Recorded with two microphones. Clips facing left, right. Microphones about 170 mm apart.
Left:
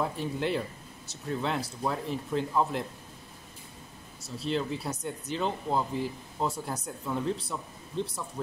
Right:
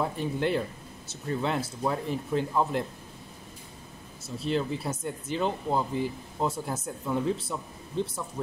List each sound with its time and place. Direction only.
0.0 s speech: centre (ahead or behind)
4.2 s speech: centre (ahead or behind)